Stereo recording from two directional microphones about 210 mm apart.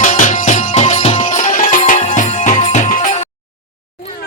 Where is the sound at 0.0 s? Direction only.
35° left (ahead or behind).